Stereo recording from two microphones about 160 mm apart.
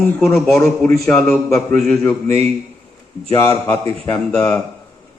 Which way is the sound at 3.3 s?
20° left (ahead or behind).